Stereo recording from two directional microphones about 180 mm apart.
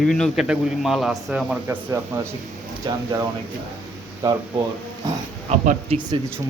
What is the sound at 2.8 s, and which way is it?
Speech, 25° right (ahead or behind).